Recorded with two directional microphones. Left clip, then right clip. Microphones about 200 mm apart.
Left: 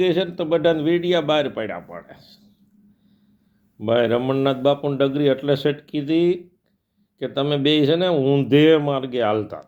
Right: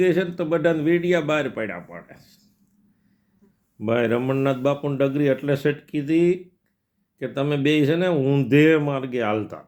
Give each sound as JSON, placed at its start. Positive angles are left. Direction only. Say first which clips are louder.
{"t": 0.0, "sound": "a man's voice", "louder": "left 1 dB", "side_deg": -20}
{"t": 3.8, "sound": "a man's voice", "louder": "left 3 dB", "side_deg": -20}